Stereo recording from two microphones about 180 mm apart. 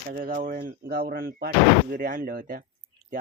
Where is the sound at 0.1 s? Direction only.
50° right (ahead or behind).